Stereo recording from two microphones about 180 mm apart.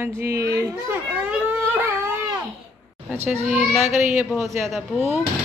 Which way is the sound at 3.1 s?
10° right (ahead or behind).